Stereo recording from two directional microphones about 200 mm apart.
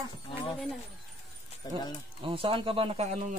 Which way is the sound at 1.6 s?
20° left (ahead or behind).